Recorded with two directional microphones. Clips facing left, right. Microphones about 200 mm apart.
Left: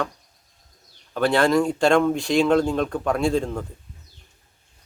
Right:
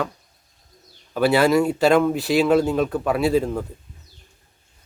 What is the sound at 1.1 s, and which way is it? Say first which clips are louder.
Speech: right 2 dB; 5° right (ahead or behind).